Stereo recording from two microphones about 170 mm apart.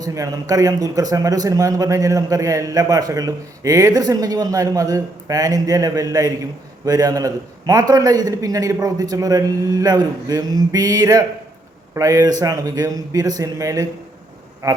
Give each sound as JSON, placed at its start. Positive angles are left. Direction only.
{"t": 0.0, "sound": "a man's voice", "side_deg": -20}